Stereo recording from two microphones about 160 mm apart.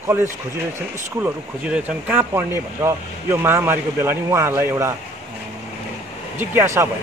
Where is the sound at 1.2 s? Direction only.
10° right (ahead or behind).